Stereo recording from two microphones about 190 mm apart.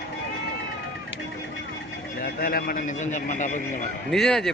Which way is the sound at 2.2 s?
50° left (ahead or behind).